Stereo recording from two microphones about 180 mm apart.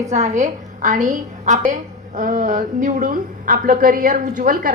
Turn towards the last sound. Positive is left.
turn(degrees=-50)  # may be behind; listen again after turning